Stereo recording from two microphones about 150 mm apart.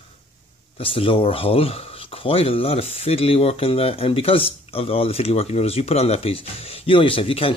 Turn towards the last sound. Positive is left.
turn(degrees=40)  # may be behind; listen again after turning